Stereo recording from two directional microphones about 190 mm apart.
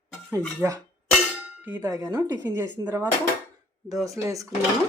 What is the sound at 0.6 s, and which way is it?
A woman's voice, 10° right (ahead or behind).